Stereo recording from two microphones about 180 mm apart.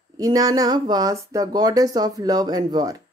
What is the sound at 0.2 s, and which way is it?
Speech, 20° right (ahead or behind).